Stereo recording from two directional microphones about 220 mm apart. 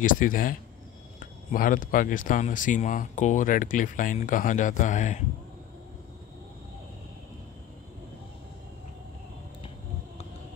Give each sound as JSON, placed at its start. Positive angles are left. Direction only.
{"t": 0.0, "sound": "speech", "side_deg": 35}